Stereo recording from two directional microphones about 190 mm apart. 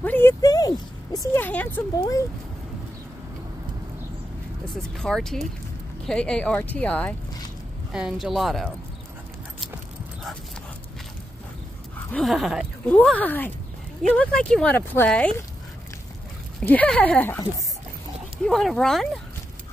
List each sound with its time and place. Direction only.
0.0 s a sound: 10° left (ahead or behind)
1.3 s a woman's voice: 10° left (ahead or behind)
4.9 s speech: 5° left (ahead or behind)
12.1 s speech: centre (ahead or behind)
16.5 s speech: 5° left (ahead or behind)